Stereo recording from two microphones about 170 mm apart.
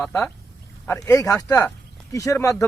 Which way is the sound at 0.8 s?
20° left (ahead or behind).